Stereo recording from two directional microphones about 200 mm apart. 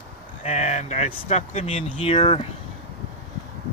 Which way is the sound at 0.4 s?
35° left (ahead or behind).